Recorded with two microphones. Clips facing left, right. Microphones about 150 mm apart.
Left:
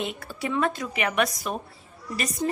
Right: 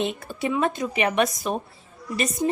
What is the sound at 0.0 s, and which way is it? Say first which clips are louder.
A woman's voice: right 4 dB; 20° right (ahead or behind).